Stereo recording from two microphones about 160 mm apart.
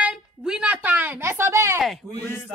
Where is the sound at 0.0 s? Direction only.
5° right (ahead or behind).